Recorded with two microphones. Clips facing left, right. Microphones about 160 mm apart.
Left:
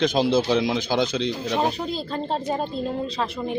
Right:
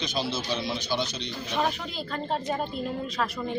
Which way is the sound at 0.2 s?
85° left.